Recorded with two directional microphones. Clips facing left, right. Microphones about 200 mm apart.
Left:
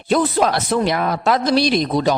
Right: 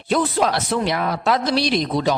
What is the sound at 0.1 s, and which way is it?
A man's voice, 45° left (ahead or behind).